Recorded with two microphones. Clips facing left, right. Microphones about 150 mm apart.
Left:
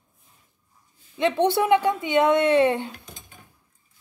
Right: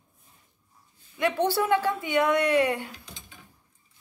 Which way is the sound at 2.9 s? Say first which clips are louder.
Left 2 dB; 50° left (ahead or behind).